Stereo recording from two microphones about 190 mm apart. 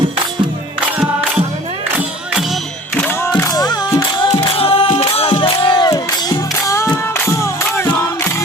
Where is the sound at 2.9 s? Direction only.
10° left (ahead or behind).